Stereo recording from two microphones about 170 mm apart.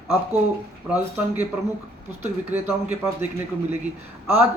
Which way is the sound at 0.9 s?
10° right (ahead or behind).